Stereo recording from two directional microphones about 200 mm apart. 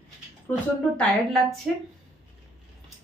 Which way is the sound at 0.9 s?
Centre (ahead or behind).